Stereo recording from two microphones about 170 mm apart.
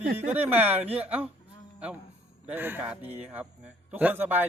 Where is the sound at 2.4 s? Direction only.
10° right (ahead or behind).